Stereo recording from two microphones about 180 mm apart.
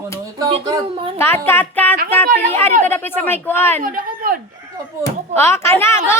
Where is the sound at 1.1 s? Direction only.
10° left (ahead or behind).